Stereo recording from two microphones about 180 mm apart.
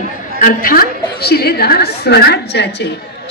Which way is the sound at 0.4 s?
50° left (ahead or behind).